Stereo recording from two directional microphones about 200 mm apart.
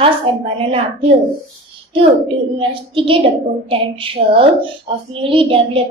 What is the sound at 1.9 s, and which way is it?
A woman's voice, 25° right (ahead or behind).